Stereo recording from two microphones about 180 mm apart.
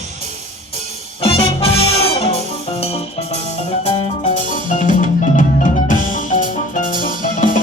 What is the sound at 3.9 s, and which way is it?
Music, 40° left (ahead or behind).